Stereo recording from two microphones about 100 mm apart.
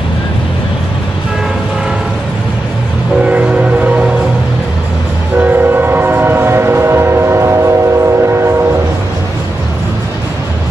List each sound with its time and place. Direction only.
3.3 s train: 15° right (ahead or behind)
5.4 s train: 20° right (ahead or behind)